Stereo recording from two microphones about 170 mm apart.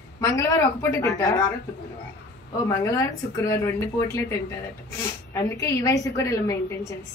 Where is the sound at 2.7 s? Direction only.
20° left (ahead or behind).